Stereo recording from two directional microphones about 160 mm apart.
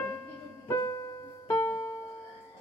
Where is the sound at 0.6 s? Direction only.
20° left (ahead or behind).